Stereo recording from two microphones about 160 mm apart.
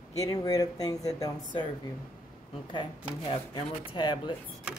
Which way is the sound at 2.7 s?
35° left (ahead or behind).